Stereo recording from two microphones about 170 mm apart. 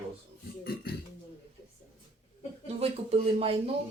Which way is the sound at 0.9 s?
65° left (ahead or behind).